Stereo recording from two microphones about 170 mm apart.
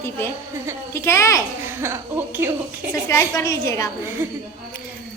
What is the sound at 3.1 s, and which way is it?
Speech, 20° left (ahead or behind).